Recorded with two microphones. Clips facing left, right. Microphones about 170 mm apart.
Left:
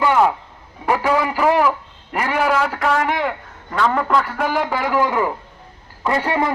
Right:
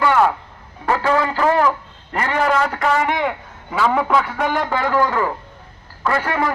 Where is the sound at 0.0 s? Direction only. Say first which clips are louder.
Even; 15° left (ahead or behind).